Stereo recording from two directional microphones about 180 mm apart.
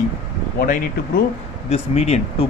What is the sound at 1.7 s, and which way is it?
Speech, 35° left (ahead or behind).